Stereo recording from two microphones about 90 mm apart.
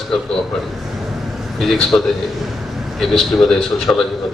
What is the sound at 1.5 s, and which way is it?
Speech, centre (ahead or behind).